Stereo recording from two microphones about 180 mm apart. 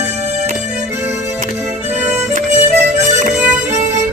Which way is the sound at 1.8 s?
40° right (ahead or behind).